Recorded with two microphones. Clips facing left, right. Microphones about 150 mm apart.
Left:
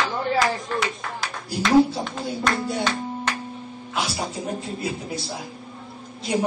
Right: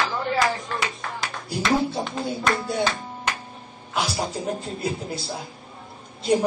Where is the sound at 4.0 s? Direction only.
Centre (ahead or behind).